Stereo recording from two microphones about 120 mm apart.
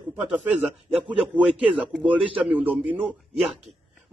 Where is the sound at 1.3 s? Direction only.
10° right (ahead or behind).